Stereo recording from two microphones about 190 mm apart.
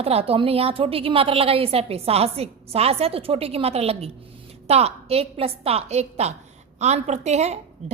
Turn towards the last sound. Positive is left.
turn(degrees=-35)  # may be behind; listen again after turning